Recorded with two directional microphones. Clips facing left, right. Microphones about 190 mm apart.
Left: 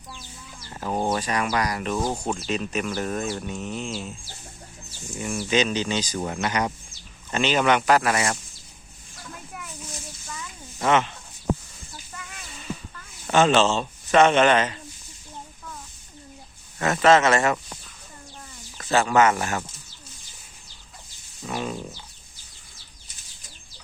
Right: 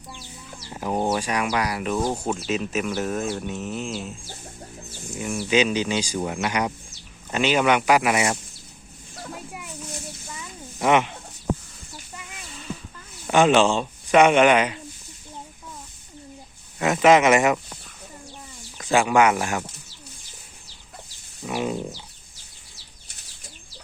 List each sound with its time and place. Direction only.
0.7 s a sound: 10° right (ahead or behind)
1.5 s speech: 10° right (ahead or behind)
5.1 s speech: 5° right (ahead or behind)
10.8 s speech: 15° right (ahead or behind)
13.3 s speech: 15° right (ahead or behind)
16.7 s speech: 15° right (ahead or behind)
18.9 s speech: 10° right (ahead or behind)
21.4 s speech: 15° right (ahead or behind)